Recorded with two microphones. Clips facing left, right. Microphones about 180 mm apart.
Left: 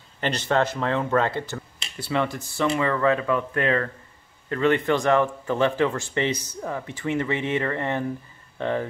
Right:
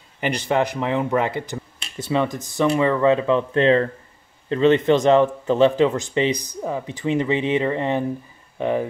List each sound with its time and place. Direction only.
0.2 s a man's voice: 15° right (ahead or behind)